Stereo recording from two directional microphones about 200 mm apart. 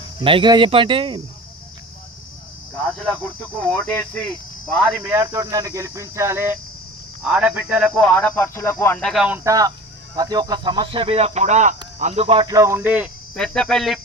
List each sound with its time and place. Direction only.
0.2 s speech: 25° right (ahead or behind)
3.6 s speech: 5° left (ahead or behind)
5.0 s speech: 15° right (ahead or behind)
13.3 s speech: 5° left (ahead or behind)